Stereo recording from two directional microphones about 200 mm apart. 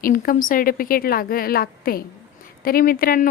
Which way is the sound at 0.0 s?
45° left (ahead or behind).